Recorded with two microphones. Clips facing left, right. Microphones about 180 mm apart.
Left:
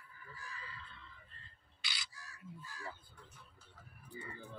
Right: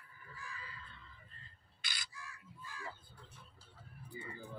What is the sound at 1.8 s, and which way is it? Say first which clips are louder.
Bird: left 1 dB; 50° right (ahead or behind).